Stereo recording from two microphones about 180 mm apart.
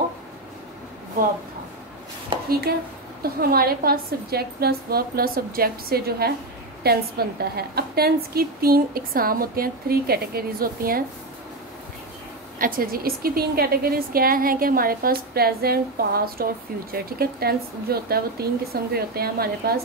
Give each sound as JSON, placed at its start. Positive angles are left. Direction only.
{"t": 2.3, "sound": "a sound", "side_deg": -30}
{"t": 3.2, "sound": "a woman's voice", "side_deg": -55}
{"t": 12.5, "sound": "a woman's voice", "side_deg": -50}